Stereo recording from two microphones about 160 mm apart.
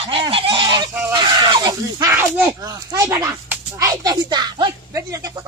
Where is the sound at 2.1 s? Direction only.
10° right (ahead or behind).